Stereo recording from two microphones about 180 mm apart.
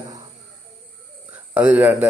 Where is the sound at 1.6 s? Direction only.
10° right (ahead or behind).